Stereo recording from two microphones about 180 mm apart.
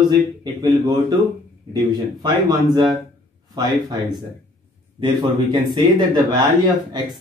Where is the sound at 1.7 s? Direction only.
20° right (ahead or behind).